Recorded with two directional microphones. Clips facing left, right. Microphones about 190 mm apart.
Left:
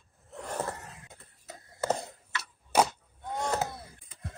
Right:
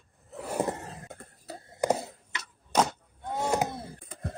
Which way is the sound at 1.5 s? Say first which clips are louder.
Right 5 dB; 30° right (ahead or behind).